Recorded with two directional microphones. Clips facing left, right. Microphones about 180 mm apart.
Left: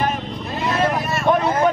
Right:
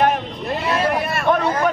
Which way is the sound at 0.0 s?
60° right (ahead or behind).